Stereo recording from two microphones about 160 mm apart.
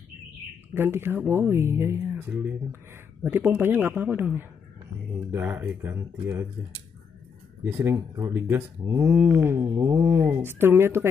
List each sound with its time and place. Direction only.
0.7 s speech: 15° right (ahead or behind)
7.7 s speech: 15° right (ahead or behind)